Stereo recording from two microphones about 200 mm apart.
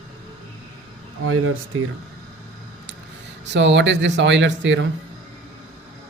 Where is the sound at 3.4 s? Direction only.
60° right (ahead or behind).